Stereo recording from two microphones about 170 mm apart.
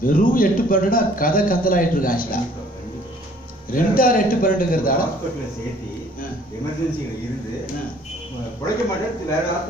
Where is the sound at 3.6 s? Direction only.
55° left (ahead or behind).